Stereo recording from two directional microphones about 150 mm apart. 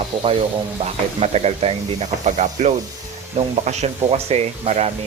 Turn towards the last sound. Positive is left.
turn(degrees=-45)  # may be behind; listen again after turning